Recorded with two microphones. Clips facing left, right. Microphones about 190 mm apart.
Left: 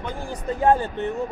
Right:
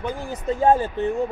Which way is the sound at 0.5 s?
25° right (ahead or behind).